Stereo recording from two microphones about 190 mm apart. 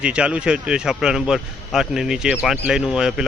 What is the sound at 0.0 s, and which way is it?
Speech, 5° right (ahead or behind).